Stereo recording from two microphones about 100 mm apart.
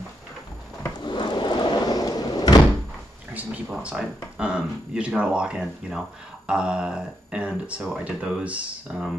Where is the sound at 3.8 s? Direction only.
10° right (ahead or behind).